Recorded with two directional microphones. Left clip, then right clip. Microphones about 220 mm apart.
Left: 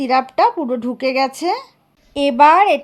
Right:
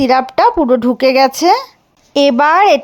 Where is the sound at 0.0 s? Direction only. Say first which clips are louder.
Right 4 dB; 20° right (ahead or behind).